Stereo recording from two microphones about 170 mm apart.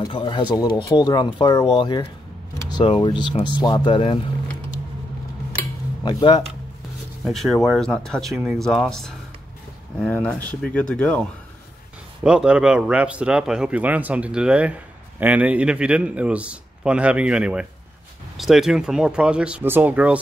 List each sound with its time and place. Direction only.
0.0 s speech: 25° left (ahead or behind)
6.0 s speech: 25° left (ahead or behind)
7.2 s speech: centre (ahead or behind)
12.2 s speech: 5° right (ahead or behind)